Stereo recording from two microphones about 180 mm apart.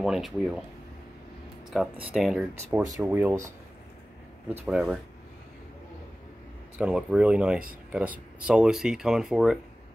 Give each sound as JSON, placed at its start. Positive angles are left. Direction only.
{"t": 0.0, "sound": "speech", "side_deg": 0}
{"t": 1.7, "sound": "speech", "side_deg": 0}
{"t": 4.6, "sound": "speech", "side_deg": -5}
{"t": 6.8, "sound": "speech", "side_deg": -5}